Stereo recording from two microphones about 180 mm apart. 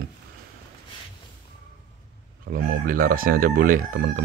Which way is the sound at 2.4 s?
60° right (ahead or behind).